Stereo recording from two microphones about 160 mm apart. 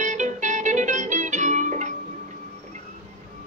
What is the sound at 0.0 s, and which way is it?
Music, 50° right (ahead or behind).